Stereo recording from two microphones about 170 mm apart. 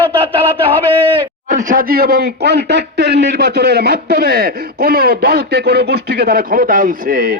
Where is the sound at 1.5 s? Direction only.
50° right (ahead or behind).